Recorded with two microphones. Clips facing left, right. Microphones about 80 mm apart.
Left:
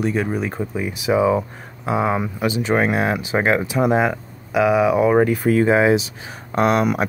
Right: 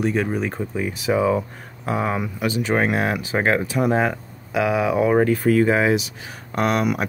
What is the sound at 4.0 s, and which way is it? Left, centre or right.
Speech, centre.